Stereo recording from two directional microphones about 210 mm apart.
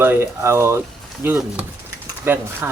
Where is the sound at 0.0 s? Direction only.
10° right (ahead or behind).